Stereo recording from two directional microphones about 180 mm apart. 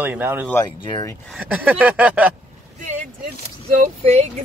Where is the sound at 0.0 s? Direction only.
10° right (ahead or behind).